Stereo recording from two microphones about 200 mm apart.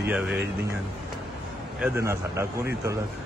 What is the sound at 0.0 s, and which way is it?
Speech, 5° right (ahead or behind).